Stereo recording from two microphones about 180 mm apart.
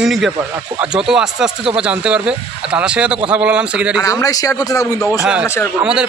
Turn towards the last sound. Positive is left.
turn(degrees=-5)  # may be behind; listen again after turning